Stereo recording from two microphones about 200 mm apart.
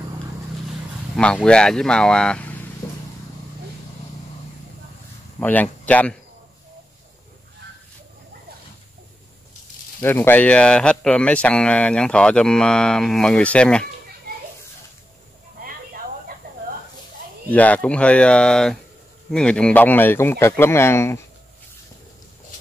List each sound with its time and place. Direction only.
1.1 s speech: 5° left (ahead or behind)
2.8 s vehicle: 15° left (ahead or behind)
5.4 s speech: 10° left (ahead or behind)
10.0 s speech: 10° left (ahead or behind)
17.5 s speech: 10° left (ahead or behind)